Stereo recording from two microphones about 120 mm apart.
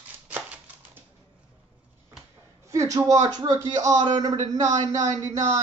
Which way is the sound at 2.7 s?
25° right (ahead or behind).